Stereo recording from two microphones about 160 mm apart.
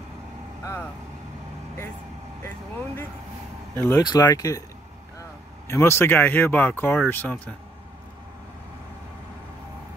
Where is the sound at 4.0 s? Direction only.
25° left (ahead or behind).